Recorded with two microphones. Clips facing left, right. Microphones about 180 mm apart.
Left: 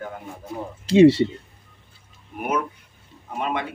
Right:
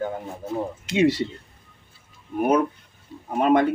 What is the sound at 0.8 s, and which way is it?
Speech, 30° left (ahead or behind).